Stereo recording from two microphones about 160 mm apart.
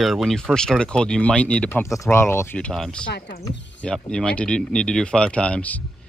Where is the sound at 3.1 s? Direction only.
90° left.